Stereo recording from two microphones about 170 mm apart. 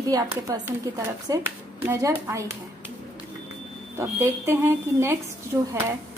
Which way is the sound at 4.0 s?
15° right (ahead or behind).